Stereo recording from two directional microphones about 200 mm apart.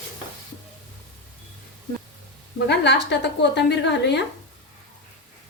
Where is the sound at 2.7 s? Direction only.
60° left (ahead or behind).